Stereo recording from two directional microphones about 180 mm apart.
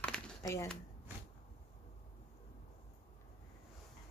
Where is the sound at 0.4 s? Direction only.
15° left (ahead or behind).